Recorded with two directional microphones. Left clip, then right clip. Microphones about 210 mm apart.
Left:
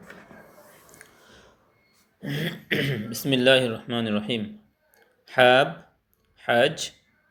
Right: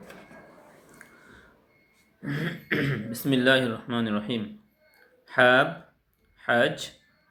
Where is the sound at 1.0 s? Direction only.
15° left (ahead or behind).